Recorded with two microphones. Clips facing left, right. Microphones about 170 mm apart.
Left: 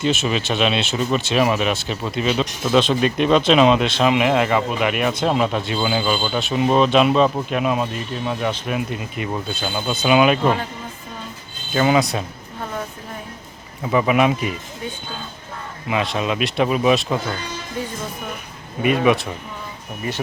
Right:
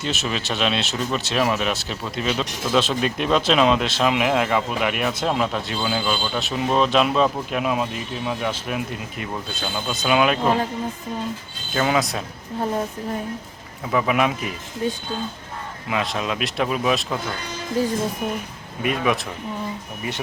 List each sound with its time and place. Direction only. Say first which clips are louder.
0.0 s speech: left 6 dB; centre (ahead or behind)
11.7 s speech: left 4 dB; 5° left (ahead or behind)
13.9 s speech: left 4 dB; 5° left (ahead or behind)
15.9 s speech: left 3 dB; centre (ahead or behind)
18.8 s speech: left 5 dB; centre (ahead or behind)